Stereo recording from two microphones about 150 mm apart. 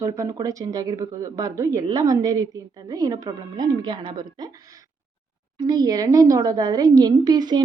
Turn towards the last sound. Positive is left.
turn(degrees=-25)  # may be behind; listen again after turning